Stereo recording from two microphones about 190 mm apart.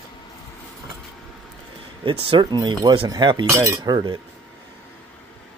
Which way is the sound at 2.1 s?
25° right (ahead or behind).